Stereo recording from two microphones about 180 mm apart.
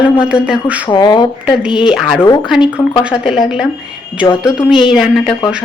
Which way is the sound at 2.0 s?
10° left (ahead or behind).